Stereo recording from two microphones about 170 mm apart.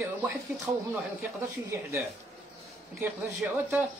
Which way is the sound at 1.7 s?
15° right (ahead or behind).